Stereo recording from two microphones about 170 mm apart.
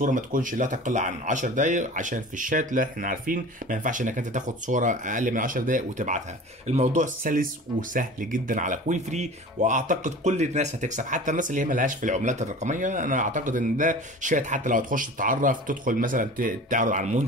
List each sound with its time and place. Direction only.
0.0 s speech: 50° right (ahead or behind)